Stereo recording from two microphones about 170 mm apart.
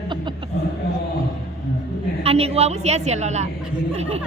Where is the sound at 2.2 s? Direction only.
35° right (ahead or behind).